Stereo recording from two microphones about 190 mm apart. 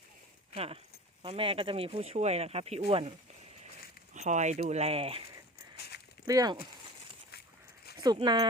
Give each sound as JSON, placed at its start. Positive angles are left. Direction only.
{"t": 0.5, "sound": "speech", "side_deg": -30}
{"t": 4.1, "sound": "speech", "side_deg": -40}
{"t": 6.2, "sound": "speech", "side_deg": -20}
{"t": 8.0, "sound": "speech", "side_deg": -25}